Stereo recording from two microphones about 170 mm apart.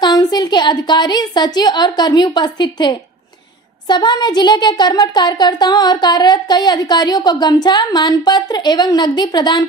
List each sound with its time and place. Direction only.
0.0 s speech: 25° left (ahead or behind)